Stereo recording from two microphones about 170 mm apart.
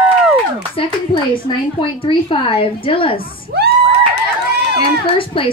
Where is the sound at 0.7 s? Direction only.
30° left (ahead or behind).